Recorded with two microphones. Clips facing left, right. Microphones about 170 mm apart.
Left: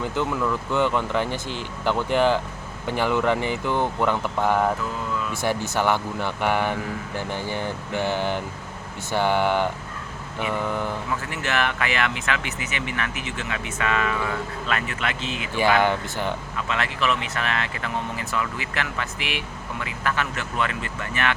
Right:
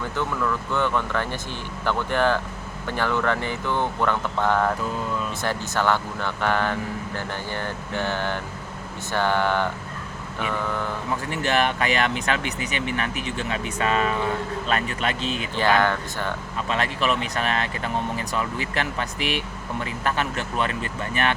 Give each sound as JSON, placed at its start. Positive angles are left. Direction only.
{"t": 0.0, "sound": "speech", "side_deg": 15}
{"t": 11.4, "sound": "speech", "side_deg": -35}
{"t": 15.5, "sound": "speech", "side_deg": 15}
{"t": 16.6, "sound": "speech", "side_deg": -35}